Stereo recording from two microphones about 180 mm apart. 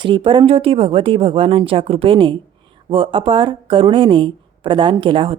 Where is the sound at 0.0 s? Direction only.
30° right (ahead or behind).